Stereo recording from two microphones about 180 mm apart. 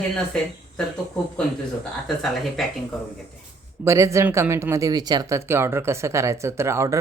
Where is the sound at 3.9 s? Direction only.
15° right (ahead or behind).